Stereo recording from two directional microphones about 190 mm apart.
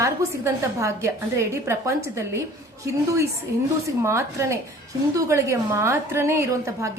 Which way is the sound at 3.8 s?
15° right (ahead or behind).